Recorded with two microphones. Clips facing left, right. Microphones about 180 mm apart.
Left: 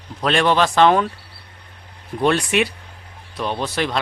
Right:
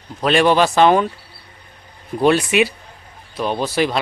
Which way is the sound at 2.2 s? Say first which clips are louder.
Right 3 dB; 5° right (ahead or behind).